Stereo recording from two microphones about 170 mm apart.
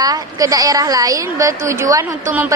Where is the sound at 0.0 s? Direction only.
20° right (ahead or behind).